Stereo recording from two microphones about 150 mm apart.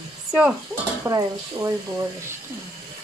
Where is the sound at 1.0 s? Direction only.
20° right (ahead or behind).